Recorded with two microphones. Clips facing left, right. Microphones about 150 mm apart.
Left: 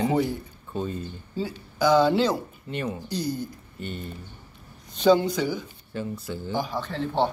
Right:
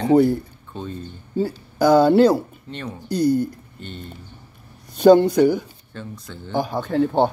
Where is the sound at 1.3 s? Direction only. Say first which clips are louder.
Right 9 dB; 50° right (ahead or behind).